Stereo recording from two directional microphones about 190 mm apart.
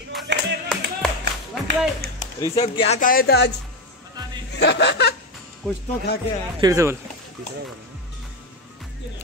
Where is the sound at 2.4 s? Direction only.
20° left (ahead or behind).